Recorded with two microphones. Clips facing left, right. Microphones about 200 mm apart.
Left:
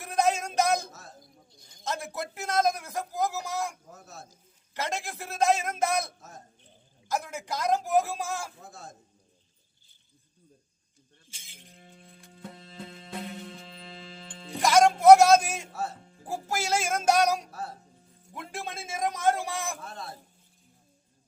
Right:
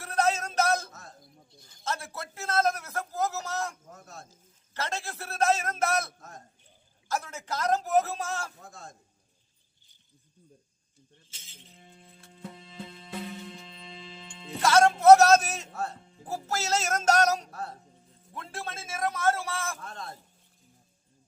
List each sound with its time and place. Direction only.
0.0 s music: 15° left (ahead or behind)
1.8 s a man's voice: 15° left (ahead or behind)
11.3 s a sound: 10° left (ahead or behind)
12.4 s music: centre (ahead or behind)
14.3 s a man's voice: 10° left (ahead or behind)